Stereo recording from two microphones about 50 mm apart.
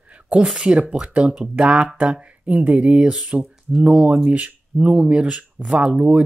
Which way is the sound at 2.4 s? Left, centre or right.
Right.